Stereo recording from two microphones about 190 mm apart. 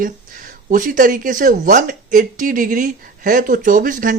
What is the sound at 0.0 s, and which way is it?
Speech, 45° right (ahead or behind).